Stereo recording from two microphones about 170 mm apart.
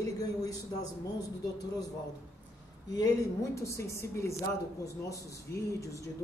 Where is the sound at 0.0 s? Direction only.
20° left (ahead or behind).